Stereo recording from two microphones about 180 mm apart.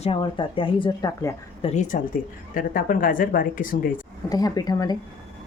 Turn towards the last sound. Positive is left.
turn(degrees=20)  # may be behind; listen again after turning